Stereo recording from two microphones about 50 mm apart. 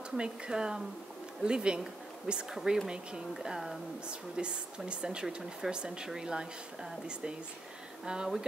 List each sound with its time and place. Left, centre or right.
0.2 s speech: centre